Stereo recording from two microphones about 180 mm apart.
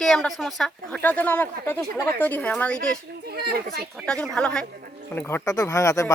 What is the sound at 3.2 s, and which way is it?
Speech, 60° right (ahead or behind).